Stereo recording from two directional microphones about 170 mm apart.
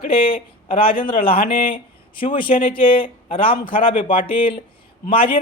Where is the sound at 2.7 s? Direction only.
30° left (ahead or behind).